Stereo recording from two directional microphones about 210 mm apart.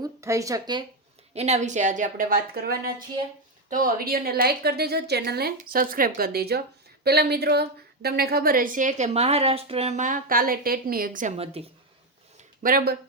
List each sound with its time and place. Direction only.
0.0 s speech: 15° right (ahead or behind)
1.3 s a woman's voice: 30° right (ahead or behind)
12.6 s a woman's voice: 45° right (ahead or behind)